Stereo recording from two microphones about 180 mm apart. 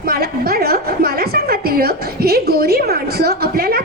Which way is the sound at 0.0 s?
55° right (ahead or behind).